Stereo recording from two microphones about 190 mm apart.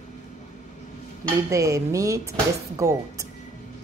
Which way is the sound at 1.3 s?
15° right (ahead or behind).